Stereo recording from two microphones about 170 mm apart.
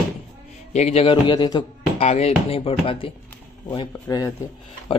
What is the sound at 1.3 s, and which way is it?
Speech, 25° left (ahead or behind).